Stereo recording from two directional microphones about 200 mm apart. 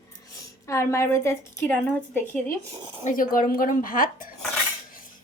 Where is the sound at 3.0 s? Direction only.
40° left (ahead or behind).